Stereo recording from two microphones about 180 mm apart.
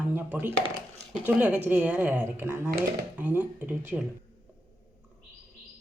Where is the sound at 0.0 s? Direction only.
10° right (ahead or behind).